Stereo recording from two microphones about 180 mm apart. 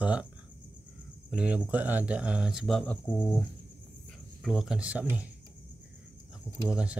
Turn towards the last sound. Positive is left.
turn(degrees=-5)  # may be behind; listen again after turning